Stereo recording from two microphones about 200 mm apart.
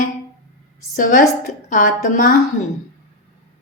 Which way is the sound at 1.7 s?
40° left (ahead or behind).